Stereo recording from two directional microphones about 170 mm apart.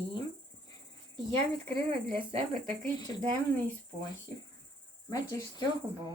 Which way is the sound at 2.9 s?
25° left (ahead or behind).